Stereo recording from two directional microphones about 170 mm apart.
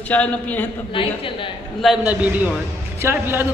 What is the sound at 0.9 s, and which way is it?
Speech, 30° left (ahead or behind).